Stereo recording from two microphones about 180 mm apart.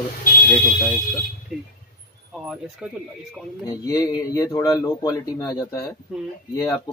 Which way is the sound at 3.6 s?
20° left (ahead or behind).